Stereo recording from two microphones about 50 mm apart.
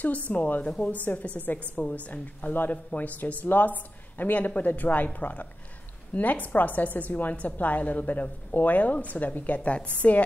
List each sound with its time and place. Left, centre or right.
0.3 s a woman's voice: left